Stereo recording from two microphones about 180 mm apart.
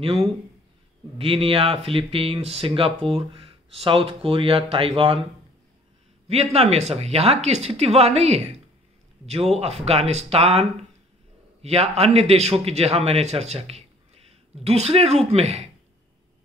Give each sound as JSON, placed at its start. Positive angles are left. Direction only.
{"t": 1.1, "sound": "speech", "side_deg": -30}
{"t": 6.2, "sound": "a man's voice", "side_deg": -35}